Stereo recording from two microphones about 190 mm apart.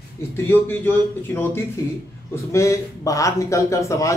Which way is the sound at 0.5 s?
10° left (ahead or behind).